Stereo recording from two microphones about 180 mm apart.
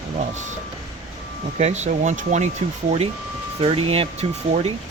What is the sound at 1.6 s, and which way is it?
Speech, 40° right (ahead or behind).